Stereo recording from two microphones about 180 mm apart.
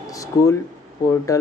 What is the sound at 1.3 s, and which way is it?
Speech, 20° left (ahead or behind).